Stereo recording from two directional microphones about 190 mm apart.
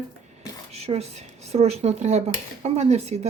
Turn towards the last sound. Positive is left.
turn(degrees=-35)  # may be behind; listen again after turning